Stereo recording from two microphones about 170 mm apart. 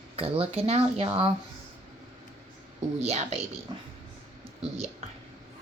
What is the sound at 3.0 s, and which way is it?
Speech, 40° right (ahead or behind).